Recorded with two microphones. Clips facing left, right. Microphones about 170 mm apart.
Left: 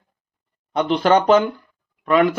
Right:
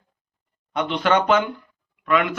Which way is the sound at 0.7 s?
35° left (ahead or behind).